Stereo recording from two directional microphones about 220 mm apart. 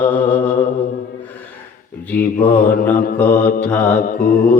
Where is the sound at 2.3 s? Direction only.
40° left (ahead or behind).